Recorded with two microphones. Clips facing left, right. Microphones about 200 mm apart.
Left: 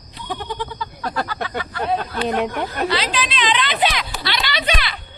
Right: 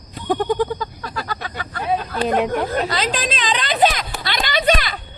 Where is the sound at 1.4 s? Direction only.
45° right (ahead or behind).